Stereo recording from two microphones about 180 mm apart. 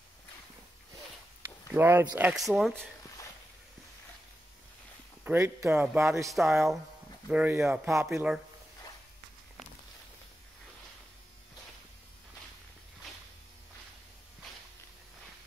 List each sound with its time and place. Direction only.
1.7 s speech: 10° right (ahead or behind)
5.2 s speech: 10° right (ahead or behind)
6.3 s speech: centre (ahead or behind)